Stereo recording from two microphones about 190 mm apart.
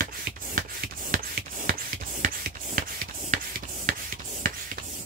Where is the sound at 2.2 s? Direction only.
45° right (ahead or behind).